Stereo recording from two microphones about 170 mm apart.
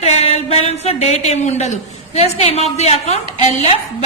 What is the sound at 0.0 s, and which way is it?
A woman's voice, 40° left (ahead or behind).